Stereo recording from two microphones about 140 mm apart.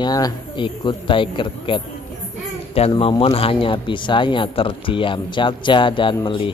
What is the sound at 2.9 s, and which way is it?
Speech, 40° left (ahead or behind).